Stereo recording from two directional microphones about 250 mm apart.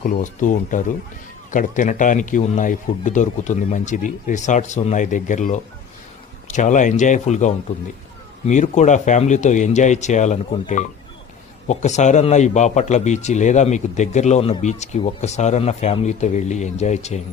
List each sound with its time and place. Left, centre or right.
0.0 s a man's voice: left